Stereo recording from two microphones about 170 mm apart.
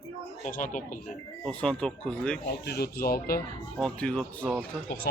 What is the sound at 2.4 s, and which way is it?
Speech, 75° left (ahead or behind).